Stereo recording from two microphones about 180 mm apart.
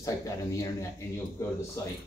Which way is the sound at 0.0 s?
15° left (ahead or behind).